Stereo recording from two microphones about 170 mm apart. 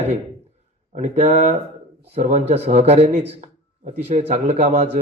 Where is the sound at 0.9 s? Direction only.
40° right (ahead or behind).